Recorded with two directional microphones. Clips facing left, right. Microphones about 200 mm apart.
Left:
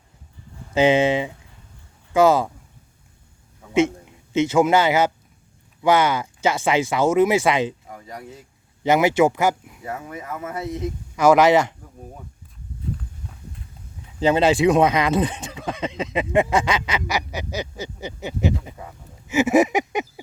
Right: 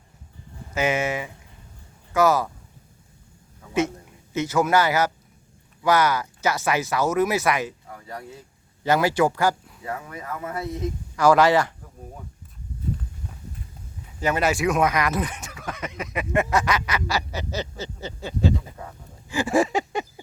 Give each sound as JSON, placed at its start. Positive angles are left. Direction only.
{"t": 0.7, "sound": "speech", "side_deg": 30}
{"t": 3.8, "sound": "a man's voice", "side_deg": 25}
{"t": 7.9, "sound": "speech", "side_deg": 15}
{"t": 14.2, "sound": "speech", "side_deg": 25}